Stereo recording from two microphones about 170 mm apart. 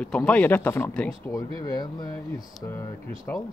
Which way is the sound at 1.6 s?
25° left (ahead or behind).